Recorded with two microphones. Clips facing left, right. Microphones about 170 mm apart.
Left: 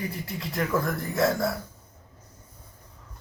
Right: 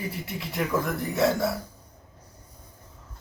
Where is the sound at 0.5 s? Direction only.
Centre (ahead or behind).